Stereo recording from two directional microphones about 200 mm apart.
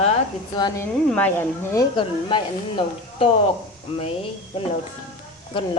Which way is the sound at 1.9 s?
25° left (ahead or behind).